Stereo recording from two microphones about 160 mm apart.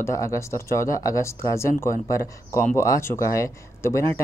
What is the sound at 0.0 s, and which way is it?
Speech, 20° left (ahead or behind).